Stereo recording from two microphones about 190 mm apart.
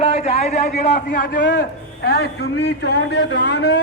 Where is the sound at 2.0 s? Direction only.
60° left (ahead or behind).